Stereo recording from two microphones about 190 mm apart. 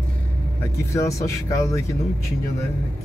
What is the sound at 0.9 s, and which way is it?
Speech, 15° left (ahead or behind).